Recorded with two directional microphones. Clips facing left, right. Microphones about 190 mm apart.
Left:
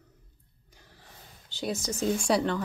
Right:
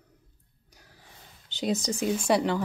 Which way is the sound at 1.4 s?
20° right (ahead or behind).